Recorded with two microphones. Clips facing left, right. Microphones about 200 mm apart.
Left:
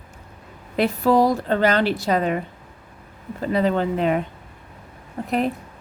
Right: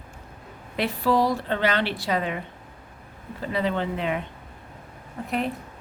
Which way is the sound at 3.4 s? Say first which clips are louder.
Left 6 dB; 40° left (ahead or behind).